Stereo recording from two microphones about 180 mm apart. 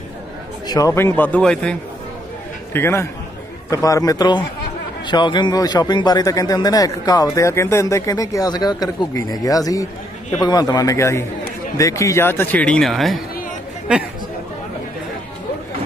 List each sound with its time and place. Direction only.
0.7 s speech: 20° left (ahead or behind); by 1.8 s 5° left (ahead or behind)
2.7 s a man's voice: 15° left (ahead or behind); by 14.0 s 5° right (ahead or behind)